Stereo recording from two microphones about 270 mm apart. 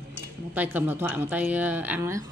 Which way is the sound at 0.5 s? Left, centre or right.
Centre.